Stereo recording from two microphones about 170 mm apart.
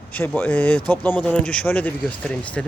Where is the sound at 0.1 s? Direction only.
10° left (ahead or behind).